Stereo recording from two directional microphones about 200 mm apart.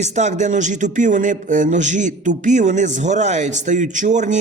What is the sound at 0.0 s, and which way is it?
Speech, 35° right (ahead or behind).